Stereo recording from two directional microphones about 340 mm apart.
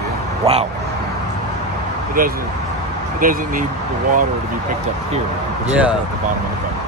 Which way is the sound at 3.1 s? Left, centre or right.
Right.